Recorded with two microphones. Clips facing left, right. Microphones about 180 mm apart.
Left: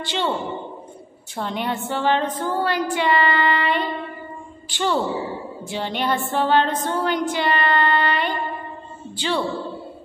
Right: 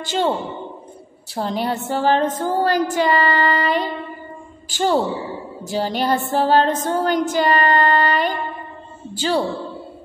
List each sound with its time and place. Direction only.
0.0 s a man's voice: 45° right (ahead or behind)
1.3 s a woman's voice: 35° right (ahead or behind)
5.6 s a sound: 40° right (ahead or behind)
9.1 s a woman's voice: 45° right (ahead or behind)